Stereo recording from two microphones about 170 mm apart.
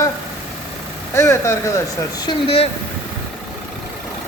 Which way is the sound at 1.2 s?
15° left (ahead or behind).